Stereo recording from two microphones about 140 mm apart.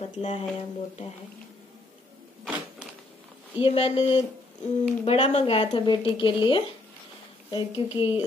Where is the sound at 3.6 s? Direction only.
45° left (ahead or behind).